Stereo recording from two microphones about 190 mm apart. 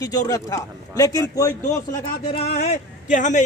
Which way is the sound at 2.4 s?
35° left (ahead or behind).